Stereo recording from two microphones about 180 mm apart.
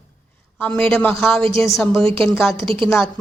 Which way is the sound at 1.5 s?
15° left (ahead or behind).